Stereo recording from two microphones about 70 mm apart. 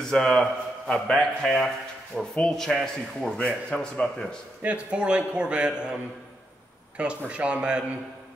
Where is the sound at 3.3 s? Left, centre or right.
Centre.